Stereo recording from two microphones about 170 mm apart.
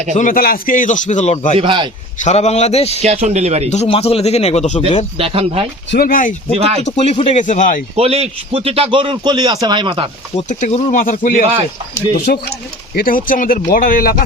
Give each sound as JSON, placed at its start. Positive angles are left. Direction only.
{"t": 0.1, "sound": "a man's voice", "side_deg": 50}
{"t": 1.5, "sound": "a man's voice", "side_deg": -30}
{"t": 2.2, "sound": "speech", "side_deg": 40}
{"t": 3.0, "sound": "speech", "side_deg": -40}
{"t": 3.7, "sound": "speech", "side_deg": 35}
{"t": 5.1, "sound": "speech", "side_deg": -35}
{"t": 5.9, "sound": "speech", "side_deg": 60}
{"t": 6.6, "sound": "speech", "side_deg": -35}
{"t": 6.8, "sound": "a man's voice", "side_deg": 40}
{"t": 7.9, "sound": "a man's voice", "side_deg": -35}
{"t": 10.3, "sound": "a man's voice", "side_deg": 45}